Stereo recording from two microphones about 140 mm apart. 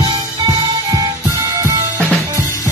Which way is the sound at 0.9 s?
25° right (ahead or behind).